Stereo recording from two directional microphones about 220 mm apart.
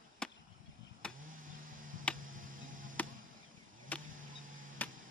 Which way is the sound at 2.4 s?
40° right (ahead or behind).